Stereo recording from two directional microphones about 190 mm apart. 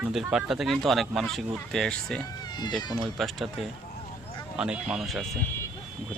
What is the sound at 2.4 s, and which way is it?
Cat, 20° left (ahead or behind).